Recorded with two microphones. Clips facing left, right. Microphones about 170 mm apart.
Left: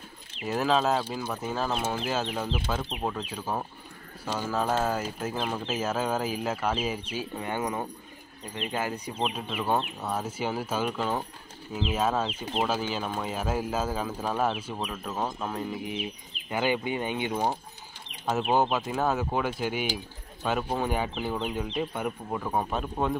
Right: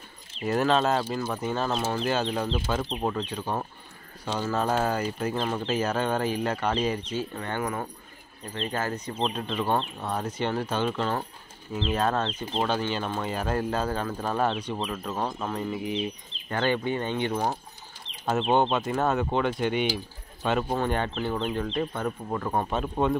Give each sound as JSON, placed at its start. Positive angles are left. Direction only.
{"t": 0.5, "sound": "speech", "side_deg": 0}
{"t": 18.5, "sound": "speech", "side_deg": 0}